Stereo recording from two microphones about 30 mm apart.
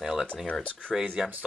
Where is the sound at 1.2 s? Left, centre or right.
Right.